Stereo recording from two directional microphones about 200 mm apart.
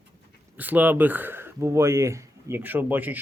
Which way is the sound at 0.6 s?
10° right (ahead or behind).